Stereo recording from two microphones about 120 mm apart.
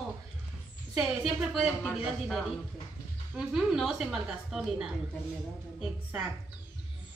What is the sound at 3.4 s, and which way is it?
A woman's voice, 5° right (ahead or behind).